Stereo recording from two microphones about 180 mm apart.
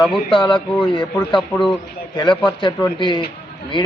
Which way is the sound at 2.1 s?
25° left (ahead or behind).